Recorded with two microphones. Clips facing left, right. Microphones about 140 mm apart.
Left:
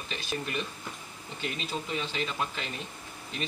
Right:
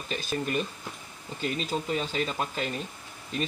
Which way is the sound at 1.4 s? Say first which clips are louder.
Right 5 dB; 40° right (ahead or behind).